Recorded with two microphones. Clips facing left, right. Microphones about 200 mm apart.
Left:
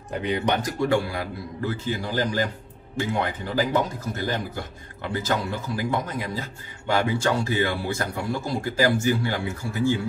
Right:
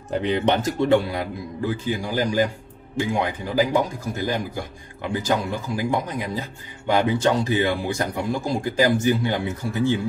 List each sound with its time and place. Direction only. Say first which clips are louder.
0.1 s speech: right 4 dB; 30° right (ahead or behind)